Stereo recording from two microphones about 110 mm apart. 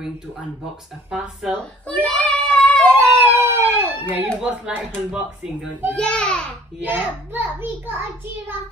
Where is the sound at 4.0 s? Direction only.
15° right (ahead or behind).